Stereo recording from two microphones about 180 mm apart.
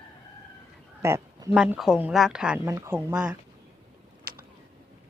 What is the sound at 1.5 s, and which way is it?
Speech, 5° right (ahead or behind).